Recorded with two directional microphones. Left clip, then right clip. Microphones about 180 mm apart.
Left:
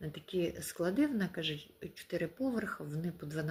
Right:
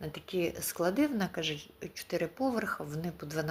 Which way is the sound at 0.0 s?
20° left (ahead or behind).